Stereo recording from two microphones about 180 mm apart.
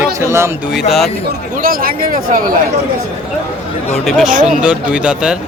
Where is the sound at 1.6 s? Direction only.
55° right (ahead or behind).